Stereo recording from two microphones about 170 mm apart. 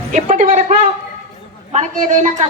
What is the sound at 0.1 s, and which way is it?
A woman's voice, 45° right (ahead or behind).